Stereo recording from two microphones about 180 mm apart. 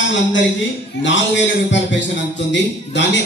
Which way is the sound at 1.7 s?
85° left.